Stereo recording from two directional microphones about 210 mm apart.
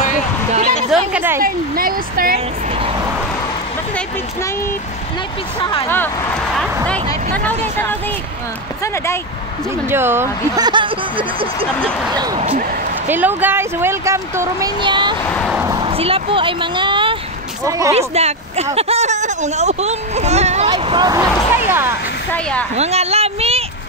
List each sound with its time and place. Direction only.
0.5 s a sound: 30° right (ahead or behind)
0.9 s speech: 10° right (ahead or behind)
1.4 s speech: 45° right (ahead or behind)
5.6 s speech: 25° left (ahead or behind)
5.9 s speech: 10° left (ahead or behind)
8.8 s speech: 10° left (ahead or behind)
9.8 s speech: 10° right (ahead or behind)
13.1 s speech: 10° right (ahead or behind)
15.2 s speech: 5° left (ahead or behind)
15.5 s speech: 15° right (ahead or behind)
17.9 s speech: 30° right (ahead or behind); by 21.9 s 10° right (ahead or behind)
22.3 s speech: 5° left (ahead or behind)
22.8 s a sound: 30° right (ahead or behind)